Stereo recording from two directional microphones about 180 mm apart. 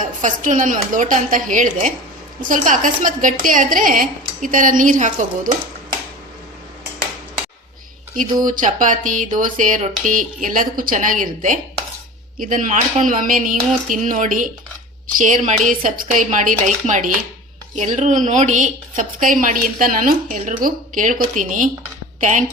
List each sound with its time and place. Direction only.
0.0 s a woman's voice: 45° right (ahead or behind)
8.4 s a woman's voice: 45° right (ahead or behind)